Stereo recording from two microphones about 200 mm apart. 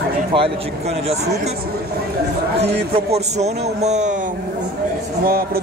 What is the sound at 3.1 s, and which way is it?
Speech, 35° right (ahead or behind).